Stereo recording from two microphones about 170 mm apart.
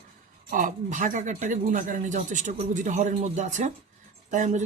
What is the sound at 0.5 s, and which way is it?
Speech, 50° right (ahead or behind).